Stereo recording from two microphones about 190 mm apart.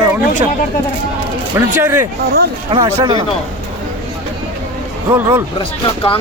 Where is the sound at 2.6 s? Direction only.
25° right (ahead or behind).